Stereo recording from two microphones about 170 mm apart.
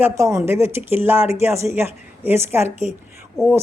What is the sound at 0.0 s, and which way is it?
Speech, 20° right (ahead or behind).